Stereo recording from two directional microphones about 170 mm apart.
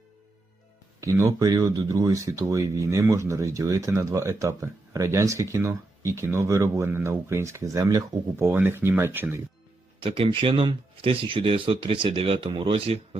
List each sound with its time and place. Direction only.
1.0 s speech: 20° right (ahead or behind)
10.0 s speech: 30° right (ahead or behind)